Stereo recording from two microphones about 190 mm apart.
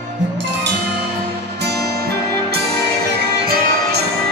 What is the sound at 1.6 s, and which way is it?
Music, 60° right (ahead or behind).